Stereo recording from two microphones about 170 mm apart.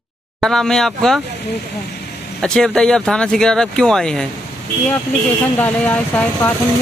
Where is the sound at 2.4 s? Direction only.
5° left (ahead or behind).